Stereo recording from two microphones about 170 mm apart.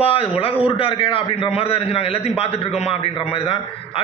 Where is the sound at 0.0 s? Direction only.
35° left (ahead or behind).